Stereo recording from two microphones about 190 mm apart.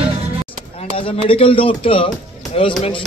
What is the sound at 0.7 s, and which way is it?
A man's voice, 30° left (ahead or behind).